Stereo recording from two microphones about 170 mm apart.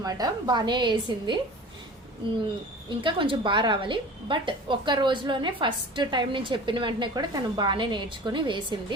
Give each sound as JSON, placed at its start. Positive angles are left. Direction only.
{"t": 0.0, "sound": "a woman's voice", "side_deg": -20}
{"t": 3.0, "sound": "a woman's voice", "side_deg": -30}